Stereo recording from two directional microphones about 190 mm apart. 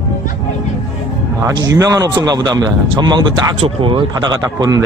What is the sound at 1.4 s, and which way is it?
A man's voice, 20° right (ahead or behind).